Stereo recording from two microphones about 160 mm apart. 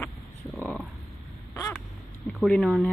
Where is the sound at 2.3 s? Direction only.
5° left (ahead or behind).